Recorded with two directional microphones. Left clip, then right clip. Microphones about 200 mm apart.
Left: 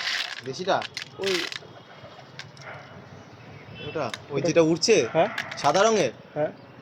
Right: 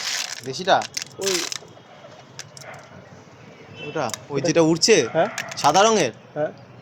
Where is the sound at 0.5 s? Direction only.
60° right (ahead or behind).